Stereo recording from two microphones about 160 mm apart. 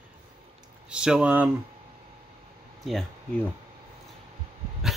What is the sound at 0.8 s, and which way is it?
Speech, 5° right (ahead or behind).